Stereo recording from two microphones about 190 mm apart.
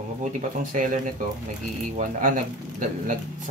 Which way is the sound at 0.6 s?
45° right (ahead or behind).